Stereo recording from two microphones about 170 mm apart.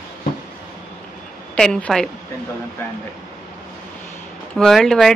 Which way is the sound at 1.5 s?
5° left (ahead or behind).